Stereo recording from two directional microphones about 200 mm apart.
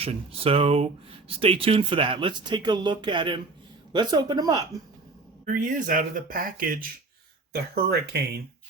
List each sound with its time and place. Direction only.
0.0 s speech: 30° right (ahead or behind)
5.5 s speech: 40° right (ahead or behind)
7.5 s speech: 55° right (ahead or behind)